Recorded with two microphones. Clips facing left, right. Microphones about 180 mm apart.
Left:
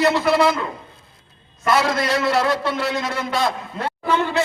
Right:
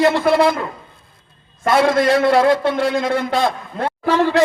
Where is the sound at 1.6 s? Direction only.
55° right (ahead or behind).